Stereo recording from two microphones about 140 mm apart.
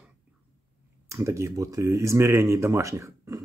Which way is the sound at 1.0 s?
20° right (ahead or behind).